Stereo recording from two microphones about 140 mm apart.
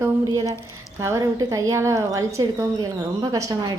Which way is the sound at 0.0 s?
20° right (ahead or behind).